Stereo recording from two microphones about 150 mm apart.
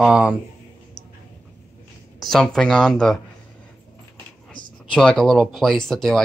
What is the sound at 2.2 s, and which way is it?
Speech, centre (ahead or behind).